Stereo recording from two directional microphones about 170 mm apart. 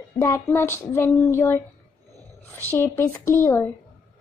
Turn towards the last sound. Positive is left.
turn(degrees=15)  # may be behind; listen again after turning